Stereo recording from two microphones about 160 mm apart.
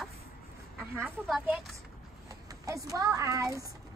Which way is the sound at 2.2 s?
20° right (ahead or behind).